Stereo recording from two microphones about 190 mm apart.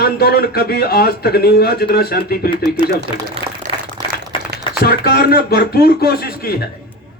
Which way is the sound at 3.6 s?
40° right (ahead or behind).